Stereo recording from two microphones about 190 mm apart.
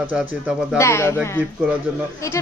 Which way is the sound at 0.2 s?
Centre (ahead or behind).